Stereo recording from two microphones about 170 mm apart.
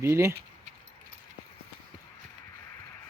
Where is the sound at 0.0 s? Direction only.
15° right (ahead or behind).